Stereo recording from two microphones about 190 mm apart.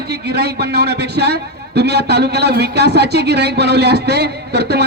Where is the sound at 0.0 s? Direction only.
60° right (ahead or behind).